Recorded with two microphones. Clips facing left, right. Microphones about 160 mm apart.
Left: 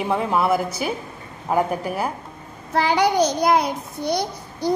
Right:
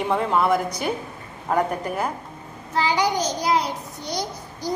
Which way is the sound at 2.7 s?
60° left (ahead or behind).